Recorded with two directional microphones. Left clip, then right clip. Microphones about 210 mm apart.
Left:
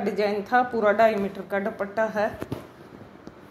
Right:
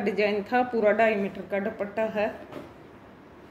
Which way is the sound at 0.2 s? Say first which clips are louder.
Left 3 dB; 5° right (ahead or behind).